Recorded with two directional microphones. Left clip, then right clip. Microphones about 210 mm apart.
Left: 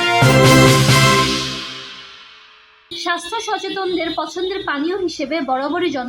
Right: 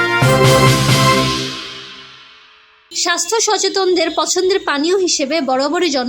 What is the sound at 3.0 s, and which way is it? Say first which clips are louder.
Speech: right 5 dB; 45° right (ahead or behind).